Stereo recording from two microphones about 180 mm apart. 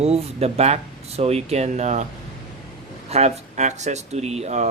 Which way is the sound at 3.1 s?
35° right (ahead or behind).